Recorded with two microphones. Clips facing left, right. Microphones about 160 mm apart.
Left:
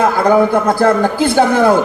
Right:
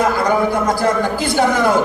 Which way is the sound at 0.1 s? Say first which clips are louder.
Left 5 dB; 50° left (ahead or behind).